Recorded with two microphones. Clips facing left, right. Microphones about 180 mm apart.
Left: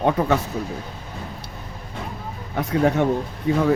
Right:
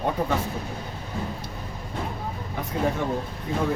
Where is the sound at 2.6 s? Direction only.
80° left.